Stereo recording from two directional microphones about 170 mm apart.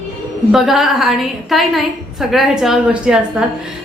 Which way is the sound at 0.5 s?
Centre (ahead or behind).